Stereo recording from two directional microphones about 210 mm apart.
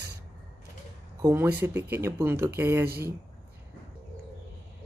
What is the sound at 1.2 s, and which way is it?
Speech, 10° right (ahead or behind).